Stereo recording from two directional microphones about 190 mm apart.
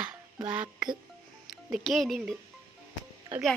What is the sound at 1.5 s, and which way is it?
Speech, centre (ahead or behind).